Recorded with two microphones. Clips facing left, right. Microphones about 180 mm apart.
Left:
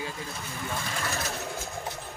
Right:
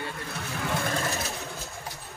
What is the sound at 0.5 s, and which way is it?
Vehicle, 80° right.